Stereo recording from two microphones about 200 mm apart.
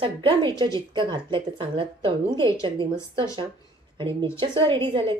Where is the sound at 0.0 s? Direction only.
25° right (ahead or behind).